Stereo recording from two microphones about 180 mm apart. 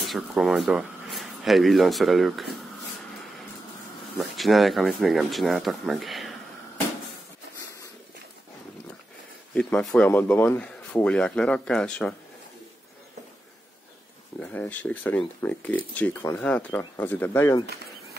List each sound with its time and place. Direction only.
0.0 s speech: centre (ahead or behind)
4.2 s speech: centre (ahead or behind)
9.5 s speech: 5° left (ahead or behind)
14.4 s speech: 10° left (ahead or behind)